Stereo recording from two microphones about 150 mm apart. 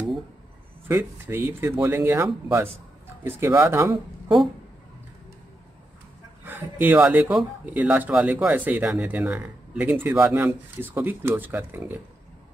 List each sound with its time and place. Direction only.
0.8 s speech: 15° right (ahead or behind)
6.4 s speech: 10° right (ahead or behind)